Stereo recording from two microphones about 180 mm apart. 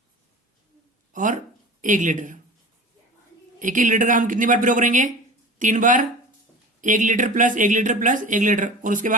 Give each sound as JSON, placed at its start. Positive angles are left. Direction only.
{"t": 1.1, "sound": "speech", "side_deg": -45}
{"t": 3.6, "sound": "speech", "side_deg": -45}